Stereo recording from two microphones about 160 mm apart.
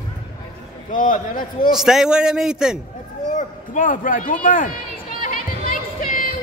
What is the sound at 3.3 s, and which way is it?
Speech, 55° left (ahead or behind).